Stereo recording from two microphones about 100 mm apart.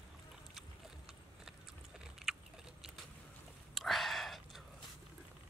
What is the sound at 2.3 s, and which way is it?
Chewing, 5° right (ahead or behind).